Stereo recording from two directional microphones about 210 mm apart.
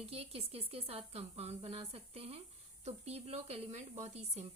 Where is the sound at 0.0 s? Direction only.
30° right (ahead or behind).